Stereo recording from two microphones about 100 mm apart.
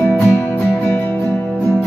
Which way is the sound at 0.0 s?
10° left (ahead or behind).